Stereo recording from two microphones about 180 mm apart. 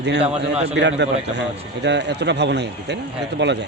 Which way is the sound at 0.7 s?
80° right.